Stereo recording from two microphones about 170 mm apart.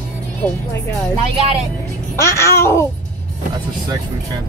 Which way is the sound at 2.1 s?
15° left (ahead or behind).